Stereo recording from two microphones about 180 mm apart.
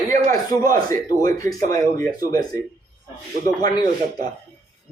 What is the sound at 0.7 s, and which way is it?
Speech, 50° right (ahead or behind).